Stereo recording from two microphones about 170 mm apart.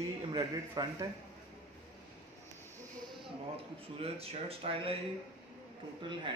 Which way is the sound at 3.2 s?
35° right (ahead or behind).